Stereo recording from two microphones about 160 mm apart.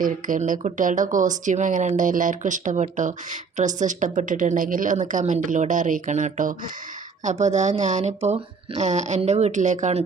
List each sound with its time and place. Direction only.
0.0 s speech: 55° right (ahead or behind)